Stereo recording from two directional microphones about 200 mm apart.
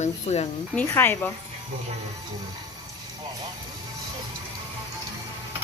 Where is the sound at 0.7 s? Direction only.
10° left (ahead or behind).